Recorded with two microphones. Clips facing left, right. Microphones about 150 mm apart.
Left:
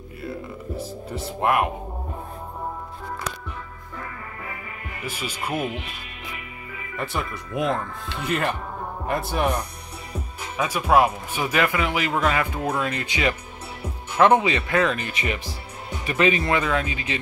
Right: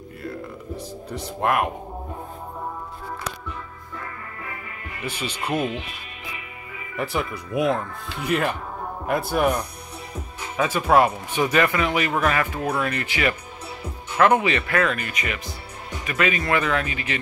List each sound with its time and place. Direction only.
0.2 s speech: 5° left (ahead or behind)
5.0 s speech: 10° left (ahead or behind)
7.0 s speech: 5° right (ahead or behind)
10.6 s speech: 5° left (ahead or behind); by 17.2 s 20° left (ahead or behind)